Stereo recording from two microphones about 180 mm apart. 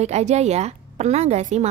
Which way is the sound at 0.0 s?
40° right (ahead or behind).